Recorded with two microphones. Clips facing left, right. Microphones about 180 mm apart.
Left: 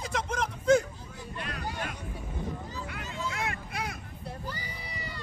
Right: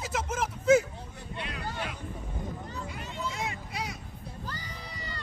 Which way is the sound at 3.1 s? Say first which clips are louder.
Left 1 dB; 65° left (ahead or behind).